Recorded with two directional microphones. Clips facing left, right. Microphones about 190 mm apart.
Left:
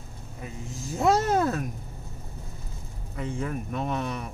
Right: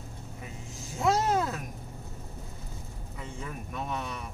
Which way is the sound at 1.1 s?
55° left (ahead or behind).